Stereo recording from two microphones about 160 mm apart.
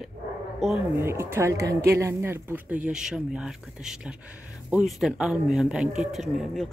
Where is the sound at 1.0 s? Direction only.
15° right (ahead or behind).